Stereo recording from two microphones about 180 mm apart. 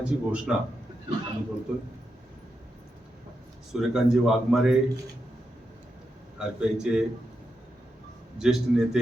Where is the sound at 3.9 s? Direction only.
5° right (ahead or behind).